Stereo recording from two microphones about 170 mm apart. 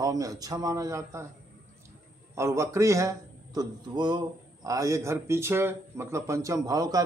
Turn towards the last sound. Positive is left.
turn(degrees=-20)  # may be behind; listen again after turning